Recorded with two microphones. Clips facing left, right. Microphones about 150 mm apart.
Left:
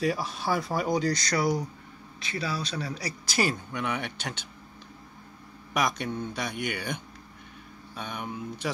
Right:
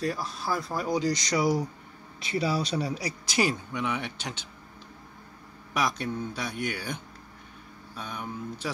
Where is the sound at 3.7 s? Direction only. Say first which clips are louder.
Right 1 dB; 10° left (ahead or behind).